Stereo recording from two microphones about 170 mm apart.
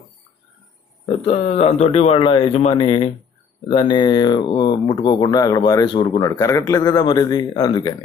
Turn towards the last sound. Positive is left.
turn(degrees=25)  # may be behind; listen again after turning